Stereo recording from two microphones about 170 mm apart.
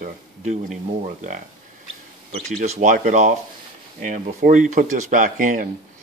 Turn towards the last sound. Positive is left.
turn(degrees=-50)  # may be behind; listen again after turning